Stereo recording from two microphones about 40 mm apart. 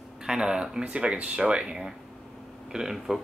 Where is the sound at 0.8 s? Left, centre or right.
Right.